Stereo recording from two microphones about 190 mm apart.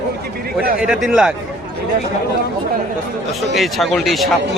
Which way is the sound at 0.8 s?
5° right (ahead or behind).